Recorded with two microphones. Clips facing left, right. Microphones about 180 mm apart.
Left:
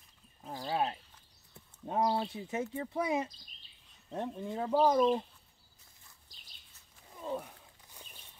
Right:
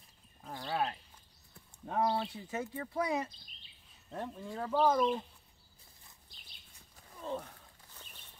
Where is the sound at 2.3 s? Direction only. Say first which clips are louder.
Left 3 dB; 20° left (ahead or behind).